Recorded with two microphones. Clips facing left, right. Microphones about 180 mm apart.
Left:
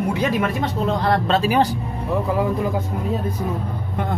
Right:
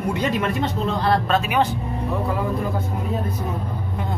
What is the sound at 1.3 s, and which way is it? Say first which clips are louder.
Speech: left 2 dB; 30° left (ahead or behind).